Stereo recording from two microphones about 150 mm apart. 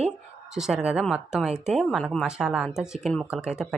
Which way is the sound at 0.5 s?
5° right (ahead or behind).